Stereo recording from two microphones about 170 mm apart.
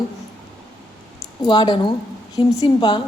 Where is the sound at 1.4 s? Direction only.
25° left (ahead or behind).